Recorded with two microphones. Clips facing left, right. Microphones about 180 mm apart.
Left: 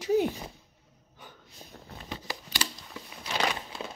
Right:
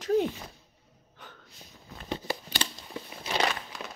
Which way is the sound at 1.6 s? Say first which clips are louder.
Left 6 dB; 30° left (ahead or behind).